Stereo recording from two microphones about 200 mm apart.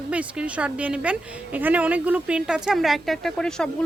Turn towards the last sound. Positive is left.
turn(degrees=5)  # may be behind; listen again after turning